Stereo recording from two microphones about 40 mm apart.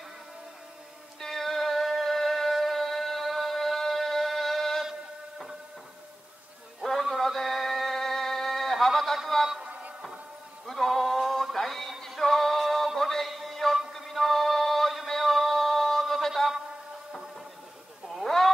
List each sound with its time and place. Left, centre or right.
1.2 s music: centre
6.8 s music: centre
8.7 s speech: centre
9.6 s music: right
10.7 s music: centre
11.5 s mantra: centre
12.2 s music: centre
15.0 s a sound: centre
18.1 s a sound: centre